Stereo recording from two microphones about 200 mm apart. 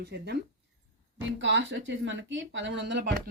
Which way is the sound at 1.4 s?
65° right (ahead or behind).